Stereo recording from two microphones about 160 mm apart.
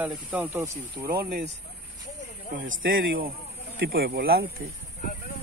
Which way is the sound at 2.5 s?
60° right (ahead or behind).